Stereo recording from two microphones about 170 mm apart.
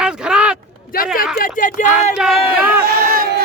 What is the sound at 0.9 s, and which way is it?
Speech, 55° left (ahead or behind).